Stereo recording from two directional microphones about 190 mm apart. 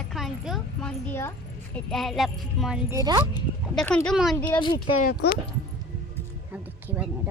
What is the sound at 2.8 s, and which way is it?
Speech, 15° right (ahead or behind).